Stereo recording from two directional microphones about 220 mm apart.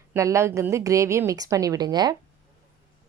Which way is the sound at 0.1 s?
15° right (ahead or behind).